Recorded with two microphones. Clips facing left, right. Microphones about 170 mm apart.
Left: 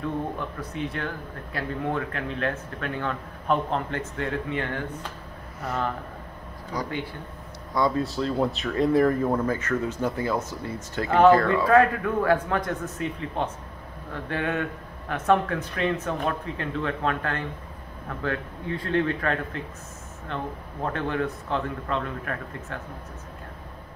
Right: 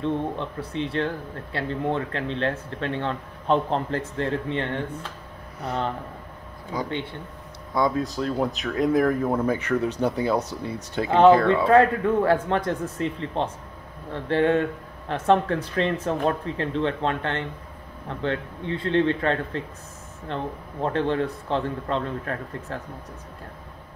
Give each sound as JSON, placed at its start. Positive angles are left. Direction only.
{"t": 0.0, "sound": "speech", "side_deg": -25}
{"t": 6.7, "sound": "speech", "side_deg": -25}
{"t": 7.7, "sound": "a man's voice", "side_deg": 0}